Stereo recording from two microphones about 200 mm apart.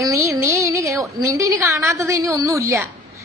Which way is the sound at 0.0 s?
15° right (ahead or behind).